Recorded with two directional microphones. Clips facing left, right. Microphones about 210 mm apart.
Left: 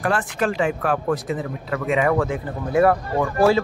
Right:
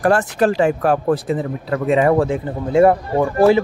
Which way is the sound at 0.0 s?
40° right (ahead or behind).